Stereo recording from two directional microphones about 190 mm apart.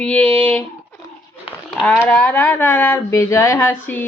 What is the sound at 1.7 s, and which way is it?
Speech, 5° left (ahead or behind).